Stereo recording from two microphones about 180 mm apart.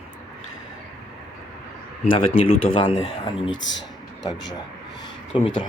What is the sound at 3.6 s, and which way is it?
Speech, 90° left.